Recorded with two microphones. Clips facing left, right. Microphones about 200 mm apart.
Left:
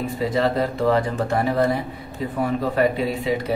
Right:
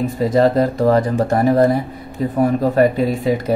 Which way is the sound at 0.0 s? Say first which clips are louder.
Right 7 dB; 45° right (ahead or behind).